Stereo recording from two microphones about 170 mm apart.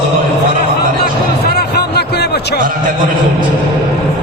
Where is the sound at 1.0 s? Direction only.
70° left (ahead or behind).